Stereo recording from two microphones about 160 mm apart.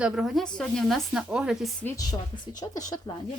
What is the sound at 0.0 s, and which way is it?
Speech, 5° right (ahead or behind).